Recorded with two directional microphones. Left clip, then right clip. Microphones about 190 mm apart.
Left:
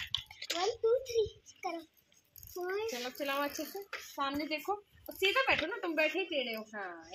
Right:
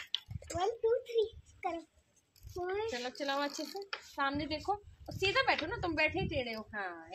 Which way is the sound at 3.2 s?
15° right (ahead or behind).